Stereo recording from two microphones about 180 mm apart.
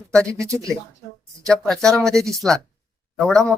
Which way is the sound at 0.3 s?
15° right (ahead or behind).